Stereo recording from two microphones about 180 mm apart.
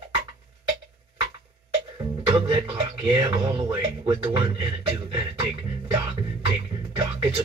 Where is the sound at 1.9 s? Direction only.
25° right (ahead or behind).